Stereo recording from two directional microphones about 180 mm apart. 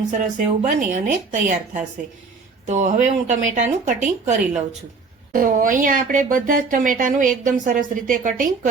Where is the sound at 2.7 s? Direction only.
40° right (ahead or behind).